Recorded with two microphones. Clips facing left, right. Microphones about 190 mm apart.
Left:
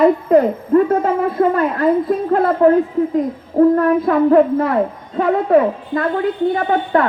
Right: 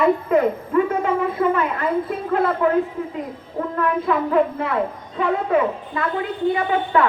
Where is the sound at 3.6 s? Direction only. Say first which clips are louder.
Left 11 dB; 40° left (ahead or behind).